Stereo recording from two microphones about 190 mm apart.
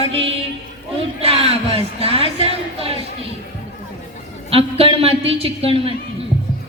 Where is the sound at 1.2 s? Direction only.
30° right (ahead or behind).